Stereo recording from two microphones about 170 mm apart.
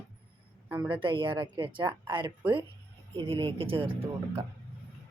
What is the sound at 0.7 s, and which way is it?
Speech, 25° right (ahead or behind).